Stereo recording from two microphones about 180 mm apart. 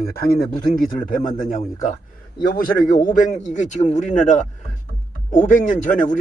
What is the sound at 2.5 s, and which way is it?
Speech, 50° left (ahead or behind).